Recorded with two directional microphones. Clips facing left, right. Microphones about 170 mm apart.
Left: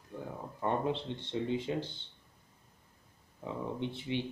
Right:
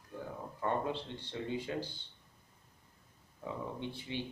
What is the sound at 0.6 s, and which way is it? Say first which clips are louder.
Speech: left 3 dB; 20° left (ahead or behind).